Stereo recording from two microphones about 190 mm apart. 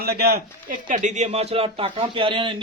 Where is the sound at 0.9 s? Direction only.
40° right (ahead or behind).